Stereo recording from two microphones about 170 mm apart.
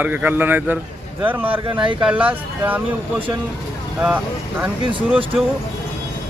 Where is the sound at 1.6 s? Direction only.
30° right (ahead or behind).